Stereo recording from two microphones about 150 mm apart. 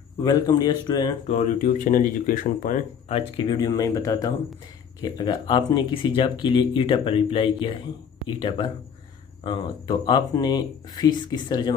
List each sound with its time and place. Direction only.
0.2 s speech: 25° left (ahead or behind)
1.6 s speech: 60° left (ahead or behind)
3.1 s speech: 40° left (ahead or behind)